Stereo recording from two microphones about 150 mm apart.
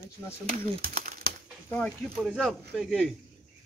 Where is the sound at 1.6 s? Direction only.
10° left (ahead or behind).